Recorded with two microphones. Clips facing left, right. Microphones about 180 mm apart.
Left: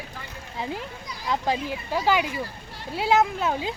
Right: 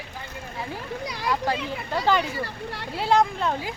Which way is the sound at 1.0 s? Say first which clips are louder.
Right 7 dB; 75° right (ahead or behind).